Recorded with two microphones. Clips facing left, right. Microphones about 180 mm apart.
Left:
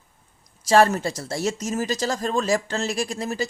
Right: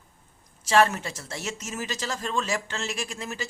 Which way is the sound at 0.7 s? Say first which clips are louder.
Left 4 dB; 40° left (ahead or behind).